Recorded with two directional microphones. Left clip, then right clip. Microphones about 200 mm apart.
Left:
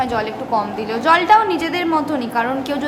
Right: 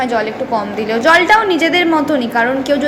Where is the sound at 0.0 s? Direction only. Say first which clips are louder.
Right 4 dB; 5° right (ahead or behind).